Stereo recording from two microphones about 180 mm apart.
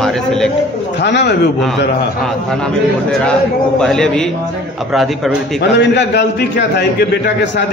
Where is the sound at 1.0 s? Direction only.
75° left (ahead or behind).